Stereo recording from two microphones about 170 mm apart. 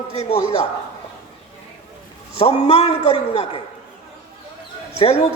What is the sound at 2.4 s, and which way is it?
A man's voice, 35° left (ahead or behind).